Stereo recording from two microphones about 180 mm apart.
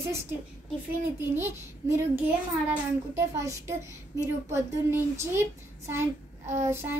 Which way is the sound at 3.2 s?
15° right (ahead or behind).